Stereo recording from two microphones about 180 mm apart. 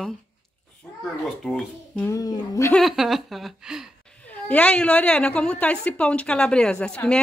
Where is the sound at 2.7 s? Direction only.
Centre (ahead or behind).